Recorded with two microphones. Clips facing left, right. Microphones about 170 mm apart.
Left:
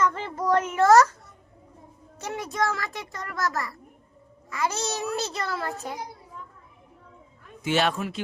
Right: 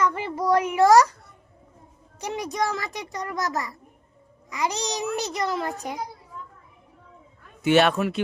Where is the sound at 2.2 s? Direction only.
15° right (ahead or behind).